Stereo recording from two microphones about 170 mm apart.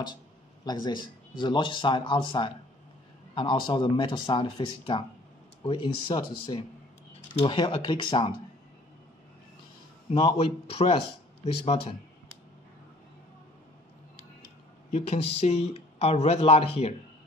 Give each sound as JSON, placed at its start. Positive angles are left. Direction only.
{"t": 0.7, "sound": "speech", "side_deg": 25}
{"t": 7.3, "sound": "speech", "side_deg": 30}
{"t": 10.1, "sound": "speech", "side_deg": 35}
{"t": 14.9, "sound": "speech", "side_deg": 40}